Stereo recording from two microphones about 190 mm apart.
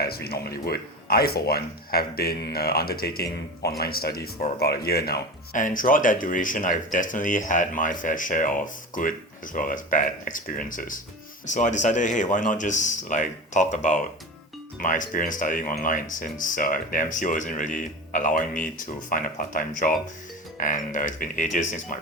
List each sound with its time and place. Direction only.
0.0 s speech: 55° left (ahead or behind)